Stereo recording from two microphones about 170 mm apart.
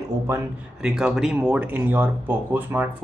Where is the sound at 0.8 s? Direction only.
5° right (ahead or behind).